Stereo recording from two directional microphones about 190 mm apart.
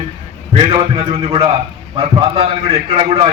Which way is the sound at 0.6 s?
30° right (ahead or behind).